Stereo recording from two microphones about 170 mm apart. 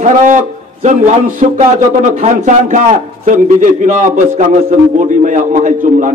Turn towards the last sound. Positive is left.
turn(degrees=-50)  # may be behind; listen again after turning